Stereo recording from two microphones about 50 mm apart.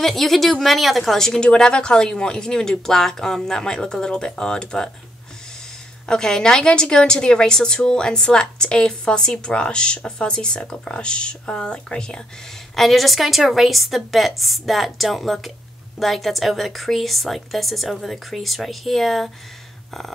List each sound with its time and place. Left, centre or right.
0.0 s speech: centre
6.0 s speech: centre
12.7 s speech: centre